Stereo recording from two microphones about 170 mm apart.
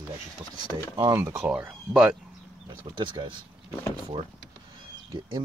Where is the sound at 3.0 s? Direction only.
30° right (ahead or behind).